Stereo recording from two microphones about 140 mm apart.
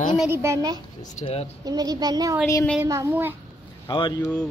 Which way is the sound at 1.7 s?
25° right (ahead or behind).